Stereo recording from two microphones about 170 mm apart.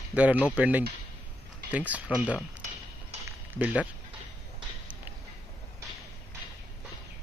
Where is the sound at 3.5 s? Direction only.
10° right (ahead or behind).